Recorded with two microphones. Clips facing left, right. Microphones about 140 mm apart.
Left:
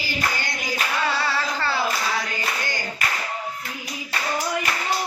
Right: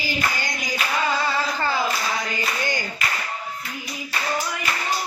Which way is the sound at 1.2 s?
15° right (ahead or behind).